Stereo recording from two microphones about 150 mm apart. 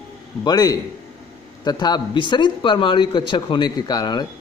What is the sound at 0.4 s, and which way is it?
Speech, 25° left (ahead or behind).